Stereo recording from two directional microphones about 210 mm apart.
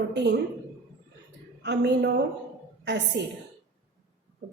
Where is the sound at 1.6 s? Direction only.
55° right (ahead or behind).